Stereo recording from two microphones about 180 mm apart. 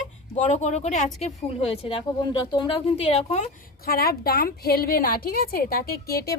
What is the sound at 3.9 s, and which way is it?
A woman's voice, 55° left (ahead or behind).